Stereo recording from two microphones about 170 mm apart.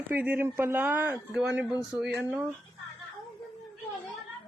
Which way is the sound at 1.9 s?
5° right (ahead or behind).